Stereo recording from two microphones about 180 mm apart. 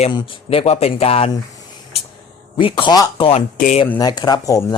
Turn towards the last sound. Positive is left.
turn(degrees=20)  # may be behind; listen again after turning